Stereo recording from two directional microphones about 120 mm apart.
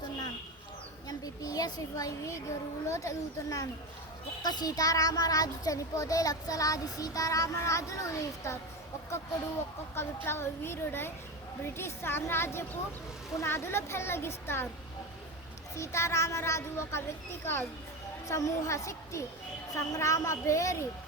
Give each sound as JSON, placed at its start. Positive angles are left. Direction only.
{"t": 1.0, "sound": "a woman's voice", "side_deg": 30}
{"t": 9.9, "sound": "a child's voice", "side_deg": 20}
{"t": 15.7, "sound": "a child's voice", "side_deg": 25}